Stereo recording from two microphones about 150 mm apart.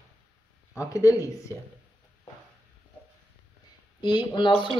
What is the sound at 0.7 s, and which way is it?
Speech, 20° left (ahead or behind).